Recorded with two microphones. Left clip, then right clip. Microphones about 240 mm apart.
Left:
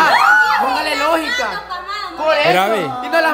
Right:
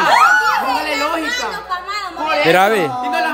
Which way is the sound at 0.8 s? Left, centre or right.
Left.